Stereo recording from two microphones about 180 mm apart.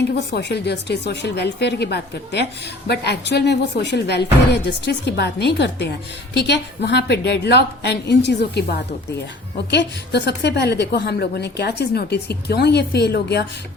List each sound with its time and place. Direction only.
0.1 s speech: 70° left (ahead or behind)
9.6 s speech: 75° left (ahead or behind)